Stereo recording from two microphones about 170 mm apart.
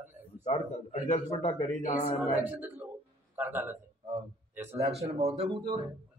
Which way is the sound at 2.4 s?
10° right (ahead or behind).